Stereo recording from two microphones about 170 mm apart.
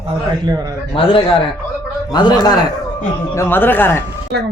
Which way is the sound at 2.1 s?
25° left (ahead or behind).